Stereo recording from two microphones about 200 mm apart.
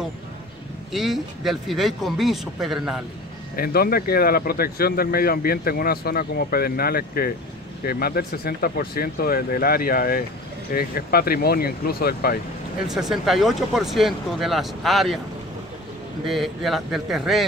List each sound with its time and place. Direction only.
0.9 s speech: centre (ahead or behind)
3.5 s speech: 50° left (ahead or behind)
12.9 s speech: centre (ahead or behind)
16.3 s speech: centre (ahead or behind)